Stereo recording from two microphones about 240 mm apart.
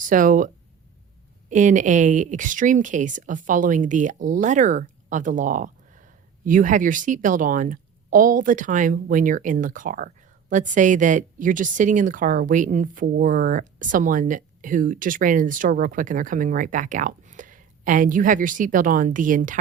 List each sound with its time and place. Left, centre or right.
0.0 s a woman's voice: right